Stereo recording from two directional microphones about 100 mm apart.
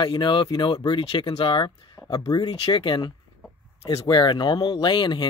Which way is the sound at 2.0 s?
45° left (ahead or behind).